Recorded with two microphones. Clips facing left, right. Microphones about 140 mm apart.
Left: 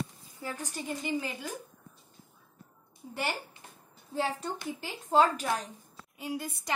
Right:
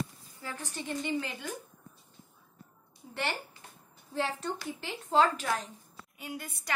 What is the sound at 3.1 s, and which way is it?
A woman's voice, 10° left (ahead or behind).